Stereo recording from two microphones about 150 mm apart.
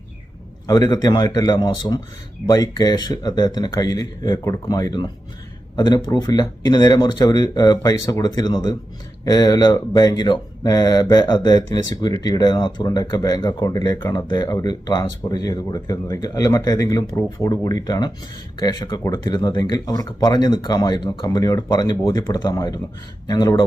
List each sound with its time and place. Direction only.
0.7 s speech: 25° left (ahead or behind)